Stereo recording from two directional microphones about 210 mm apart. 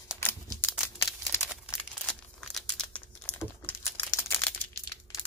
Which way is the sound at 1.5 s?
Centre (ahead or behind).